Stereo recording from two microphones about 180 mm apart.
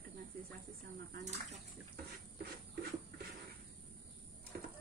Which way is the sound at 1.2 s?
40° right (ahead or behind).